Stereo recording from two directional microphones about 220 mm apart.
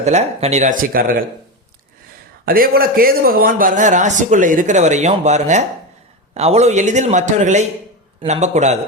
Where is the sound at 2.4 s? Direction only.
40° right (ahead or behind).